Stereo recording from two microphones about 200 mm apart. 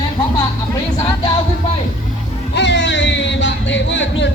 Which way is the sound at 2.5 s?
60° left (ahead or behind).